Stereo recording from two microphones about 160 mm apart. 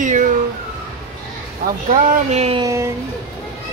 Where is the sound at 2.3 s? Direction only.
40° right (ahead or behind).